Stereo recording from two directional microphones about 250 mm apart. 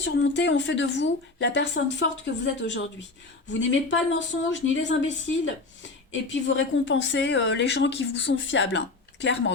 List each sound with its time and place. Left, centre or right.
0.0 s speech: left